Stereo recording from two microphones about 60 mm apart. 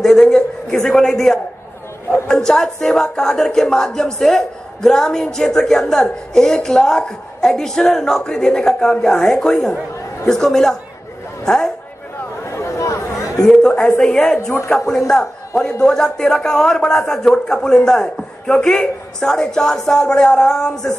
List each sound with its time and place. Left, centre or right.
0.0 s speech: centre
12.4 s a sound: left
13.4 s speech: centre